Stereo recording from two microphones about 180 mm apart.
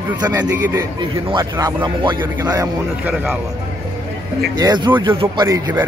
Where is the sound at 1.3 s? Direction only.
25° right (ahead or behind).